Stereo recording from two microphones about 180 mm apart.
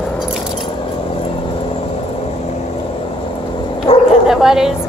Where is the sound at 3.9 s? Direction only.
30° left (ahead or behind).